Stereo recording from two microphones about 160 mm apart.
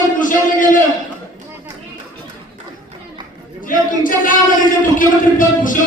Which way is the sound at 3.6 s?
55° left (ahead or behind).